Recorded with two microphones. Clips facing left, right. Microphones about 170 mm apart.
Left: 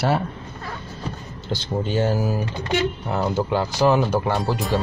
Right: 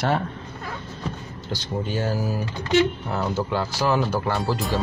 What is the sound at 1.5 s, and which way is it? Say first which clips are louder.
Speech: left 4 dB; 25° left (ahead or behind).